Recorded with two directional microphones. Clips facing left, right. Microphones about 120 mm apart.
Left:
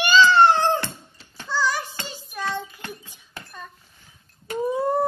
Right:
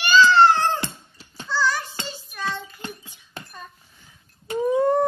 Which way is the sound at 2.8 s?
20° right (ahead or behind).